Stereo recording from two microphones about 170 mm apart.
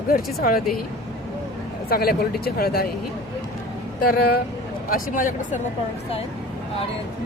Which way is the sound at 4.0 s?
60° left (ahead or behind).